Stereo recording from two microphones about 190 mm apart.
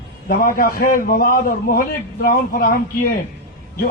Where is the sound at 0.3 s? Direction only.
50° left (ahead or behind).